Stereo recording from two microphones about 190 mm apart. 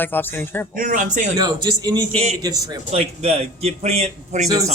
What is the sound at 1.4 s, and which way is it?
A man's voice, 20° right (ahead or behind).